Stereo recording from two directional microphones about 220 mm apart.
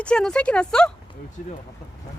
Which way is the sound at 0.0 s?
5° left (ahead or behind).